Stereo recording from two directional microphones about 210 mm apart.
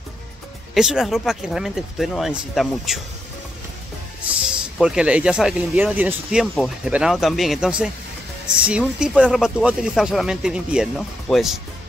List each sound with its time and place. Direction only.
0.7 s speech: 5° right (ahead or behind)
4.4 s speech: 5° right (ahead or behind)